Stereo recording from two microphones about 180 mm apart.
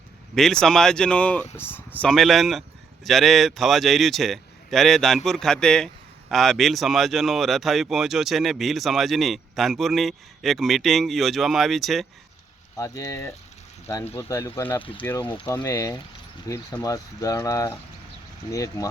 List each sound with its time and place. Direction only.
0.3 s speech: centre (ahead or behind)
12.7 s speech: 15° left (ahead or behind)
14.8 s speech: 30° left (ahead or behind)